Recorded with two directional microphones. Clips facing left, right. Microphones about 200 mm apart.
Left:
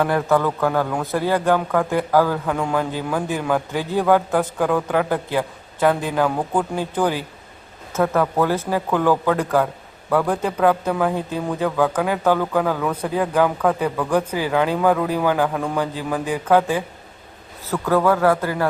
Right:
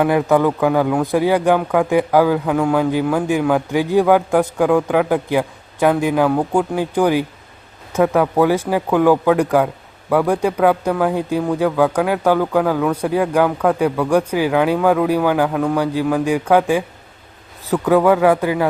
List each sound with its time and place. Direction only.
0.0 s a man's voice: 10° right (ahead or behind)